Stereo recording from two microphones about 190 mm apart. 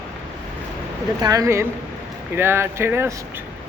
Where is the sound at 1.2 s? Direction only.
20° right (ahead or behind).